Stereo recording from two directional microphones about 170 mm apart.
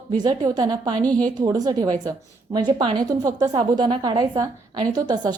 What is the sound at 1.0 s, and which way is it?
Speech, 5° left (ahead or behind).